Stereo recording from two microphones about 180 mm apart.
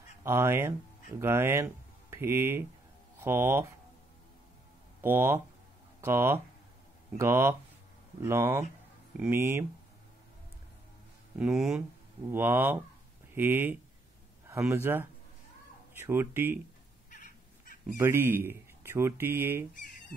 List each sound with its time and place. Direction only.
0.2 s speech: 15° right (ahead or behind)
5.0 s speech: 10° right (ahead or behind)
11.3 s speech: 5° right (ahead or behind)
17.1 s cat: 45° left (ahead or behind)
17.9 s speech: 15° right (ahead or behind)